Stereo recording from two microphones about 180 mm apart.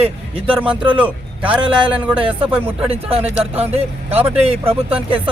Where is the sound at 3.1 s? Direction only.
35° right (ahead or behind).